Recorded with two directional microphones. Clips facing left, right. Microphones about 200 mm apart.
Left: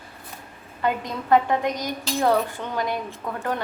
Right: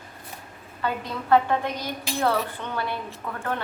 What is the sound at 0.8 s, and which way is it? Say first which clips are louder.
Speech: left 3 dB; 15° left (ahead or behind).